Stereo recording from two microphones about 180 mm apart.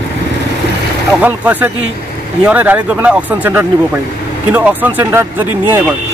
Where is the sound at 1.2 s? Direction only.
10° right (ahead or behind).